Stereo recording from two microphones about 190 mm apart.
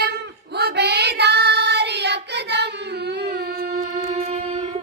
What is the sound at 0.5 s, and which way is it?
Child singing, 60° right (ahead or behind).